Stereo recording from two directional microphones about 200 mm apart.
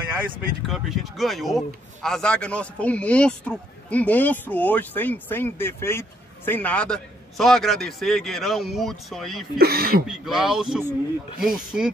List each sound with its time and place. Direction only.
0.7 s a man's voice: centre (ahead or behind)
9.6 s speech: 50° right (ahead or behind)
10.0 s a man's voice: centre (ahead or behind)